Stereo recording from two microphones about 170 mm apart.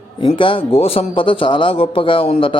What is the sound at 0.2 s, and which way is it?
A man's voice, 30° left (ahead or behind).